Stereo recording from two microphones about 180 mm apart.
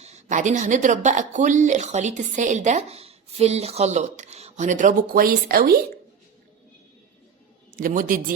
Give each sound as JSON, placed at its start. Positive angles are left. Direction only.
{"t": 0.0, "sound": "speech", "side_deg": -40}
{"t": 7.8, "sound": "a man's voice", "side_deg": -50}